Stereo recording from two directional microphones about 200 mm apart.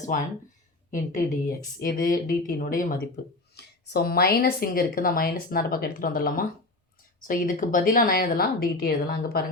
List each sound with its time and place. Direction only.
0.0 s a woman's voice: 40° left (ahead or behind)
3.5 s speech: 55° left (ahead or behind)